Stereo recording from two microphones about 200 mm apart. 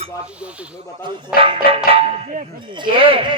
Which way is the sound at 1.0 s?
25° right (ahead or behind).